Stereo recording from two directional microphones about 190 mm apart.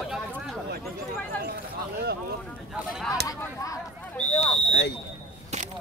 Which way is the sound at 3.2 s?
20° left (ahead or behind).